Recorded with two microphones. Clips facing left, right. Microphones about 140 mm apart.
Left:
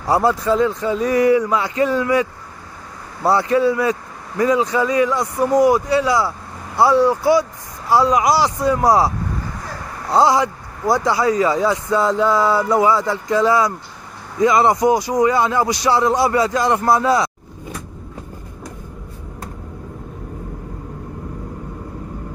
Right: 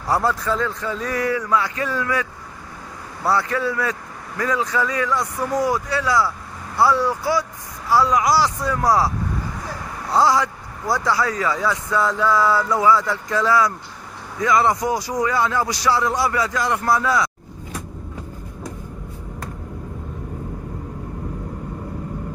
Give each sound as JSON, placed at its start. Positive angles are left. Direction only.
{"t": 0.0, "sound": "speech", "side_deg": 15}
{"t": 10.1, "sound": "speech", "side_deg": 20}